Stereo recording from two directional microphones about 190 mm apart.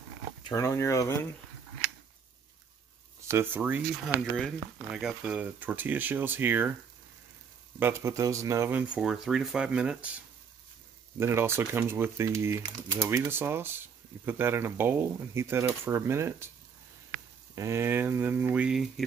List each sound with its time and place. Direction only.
0.4 s speech: 15° left (ahead or behind)
3.3 s speech: 10° right (ahead or behind)
7.8 s speech: 15° right (ahead or behind)
17.6 s speech: 15° right (ahead or behind)